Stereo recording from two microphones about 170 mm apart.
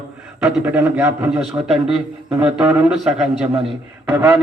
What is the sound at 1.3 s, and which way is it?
A man's voice, centre (ahead or behind).